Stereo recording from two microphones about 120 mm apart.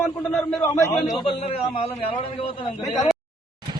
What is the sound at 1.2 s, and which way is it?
A man's voice, 55° left (ahead or behind).